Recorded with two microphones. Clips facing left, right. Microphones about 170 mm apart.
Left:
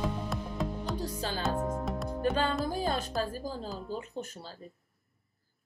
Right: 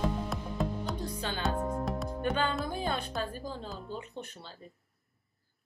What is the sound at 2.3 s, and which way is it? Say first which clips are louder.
Music: even; 35° left (ahead or behind).